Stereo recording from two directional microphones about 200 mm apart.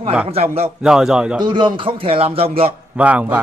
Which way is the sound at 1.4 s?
25° right (ahead or behind).